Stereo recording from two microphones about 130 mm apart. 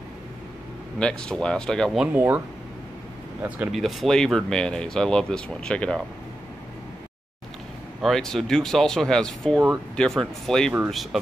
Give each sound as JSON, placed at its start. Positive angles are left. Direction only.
{"t": 0.9, "sound": "a man's voice", "side_deg": 5}
{"t": 2.1, "sound": "speech", "side_deg": -15}
{"t": 3.4, "sound": "speech", "side_deg": -10}
{"t": 3.7, "sound": "speech", "side_deg": 0}
{"t": 8.0, "sound": "speech", "side_deg": 5}